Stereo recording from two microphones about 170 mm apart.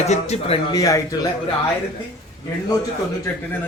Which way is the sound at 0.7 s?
20° left (ahead or behind).